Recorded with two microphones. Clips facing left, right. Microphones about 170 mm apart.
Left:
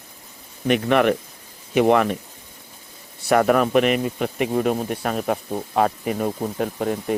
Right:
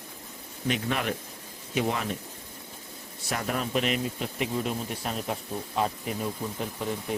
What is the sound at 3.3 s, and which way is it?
Speech, 65° left (ahead or behind).